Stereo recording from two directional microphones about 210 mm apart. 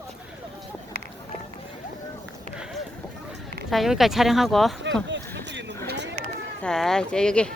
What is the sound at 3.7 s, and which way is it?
Speech, centre (ahead or behind).